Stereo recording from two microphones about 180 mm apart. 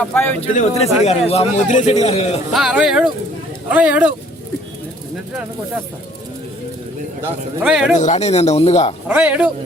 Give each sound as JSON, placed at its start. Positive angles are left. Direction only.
{"t": 0.0, "sound": "speech", "side_deg": 10}
{"t": 0.5, "sound": "speech", "side_deg": 40}
{"t": 2.5, "sound": "speech", "side_deg": 0}
{"t": 7.6, "sound": "speech", "side_deg": -5}
{"t": 7.9, "sound": "speech", "side_deg": 40}
{"t": 9.0, "sound": "speech", "side_deg": -10}